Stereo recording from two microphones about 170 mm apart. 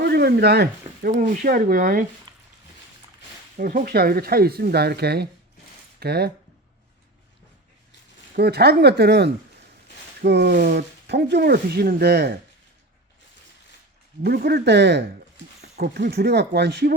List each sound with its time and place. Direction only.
0.0 s speech: 70° right (ahead or behind)
2.3 s a sound: 25° right (ahead or behind)
3.6 s speech: 60° right (ahead or behind)
8.4 s speech: 70° right (ahead or behind)
14.3 s speech: 65° right (ahead or behind); by 15.0 s 80° right
15.8 s speech: 70° right (ahead or behind)